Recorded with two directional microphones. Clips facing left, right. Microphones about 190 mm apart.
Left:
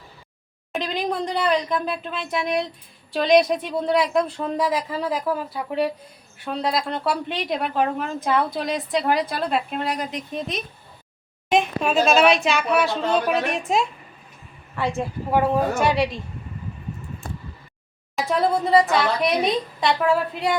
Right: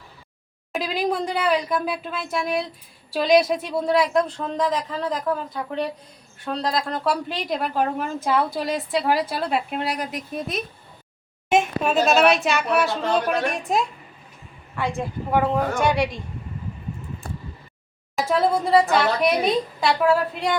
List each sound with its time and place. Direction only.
0.7 s a woman's voice: 5° right (ahead or behind)
14.8 s a woman's voice: centre (ahead or behind)
18.2 s a woman's voice: centre (ahead or behind)